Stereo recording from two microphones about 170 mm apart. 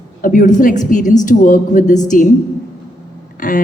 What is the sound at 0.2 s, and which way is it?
A woman's voice, 50° left (ahead or behind).